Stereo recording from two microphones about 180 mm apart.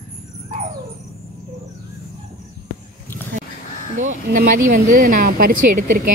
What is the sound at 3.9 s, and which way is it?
Speech, 45° right (ahead or behind).